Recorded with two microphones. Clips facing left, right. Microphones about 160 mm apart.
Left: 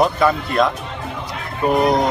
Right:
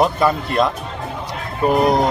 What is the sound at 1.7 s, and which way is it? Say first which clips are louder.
Speech: even; centre (ahead or behind).